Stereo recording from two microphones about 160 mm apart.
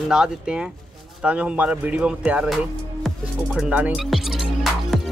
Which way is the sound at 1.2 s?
5° right (ahead or behind).